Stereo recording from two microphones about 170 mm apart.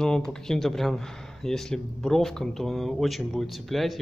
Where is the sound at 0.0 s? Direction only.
5° left (ahead or behind).